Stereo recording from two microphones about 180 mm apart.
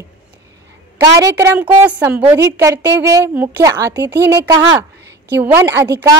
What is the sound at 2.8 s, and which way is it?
Speech, 75° right (ahead or behind).